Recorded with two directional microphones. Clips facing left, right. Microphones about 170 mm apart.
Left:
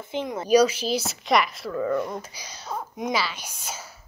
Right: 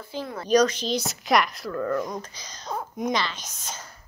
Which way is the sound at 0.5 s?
10° left (ahead or behind).